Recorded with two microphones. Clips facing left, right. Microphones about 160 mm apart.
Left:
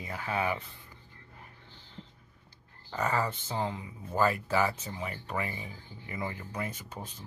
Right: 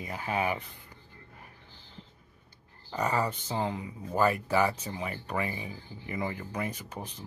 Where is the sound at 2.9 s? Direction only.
15° right (ahead or behind).